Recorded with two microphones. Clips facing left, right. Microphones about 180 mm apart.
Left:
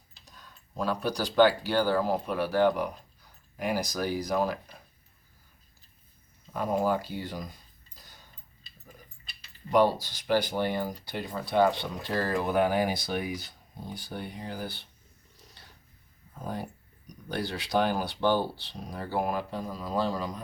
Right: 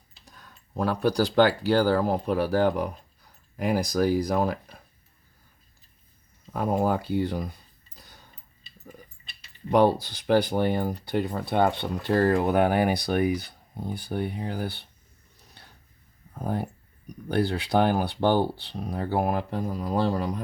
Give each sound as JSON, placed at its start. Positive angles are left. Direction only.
{"t": 0.3, "sound": "tick-tock", "side_deg": -60}
{"t": 1.4, "sound": "speech", "side_deg": -50}
{"t": 2.2, "sound": "speech", "side_deg": -35}
{"t": 3.7, "sound": "speech", "side_deg": -60}
{"t": 6.5, "sound": "speech", "side_deg": -55}
{"t": 9.6, "sound": "speech", "side_deg": -60}
{"t": 16.4, "sound": "speech", "side_deg": -55}